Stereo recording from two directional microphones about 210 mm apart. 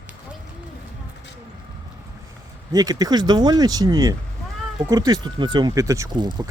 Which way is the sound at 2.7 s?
20° right (ahead or behind).